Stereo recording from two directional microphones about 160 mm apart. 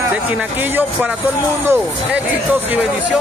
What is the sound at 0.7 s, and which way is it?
Speech, 10° right (ahead or behind).